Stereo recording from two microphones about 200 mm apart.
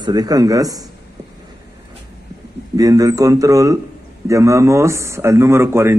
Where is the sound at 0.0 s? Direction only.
20° right (ahead or behind).